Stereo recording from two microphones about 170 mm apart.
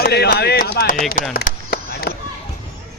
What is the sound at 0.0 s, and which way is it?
Speech, 70° left (ahead or behind).